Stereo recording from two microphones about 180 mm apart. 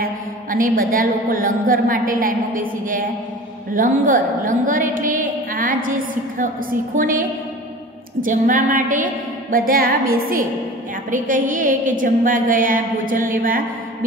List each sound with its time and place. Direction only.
0.0 s a woman's voice: 50° right (ahead or behind)